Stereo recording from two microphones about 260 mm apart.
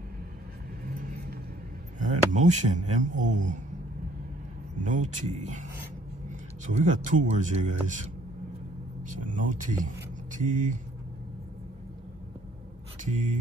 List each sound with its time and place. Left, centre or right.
0.8 s vehicle: right
2.0 s speech: right
4.8 s speech: right
9.3 s speech: right
13.0 s speech: right